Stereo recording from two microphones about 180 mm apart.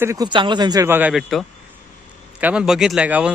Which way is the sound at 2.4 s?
5° right (ahead or behind).